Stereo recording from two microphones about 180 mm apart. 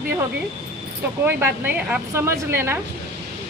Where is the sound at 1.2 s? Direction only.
10° right (ahead or behind).